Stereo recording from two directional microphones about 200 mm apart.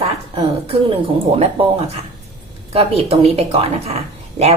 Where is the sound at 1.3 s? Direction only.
30° right (ahead or behind).